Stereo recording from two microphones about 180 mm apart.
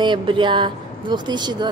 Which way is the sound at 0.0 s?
25° right (ahead or behind).